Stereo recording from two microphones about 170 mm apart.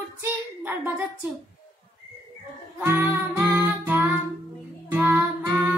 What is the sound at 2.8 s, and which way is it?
Music, 15° right (ahead or behind).